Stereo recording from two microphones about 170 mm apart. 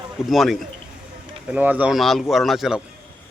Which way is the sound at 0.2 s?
Centre (ahead or behind).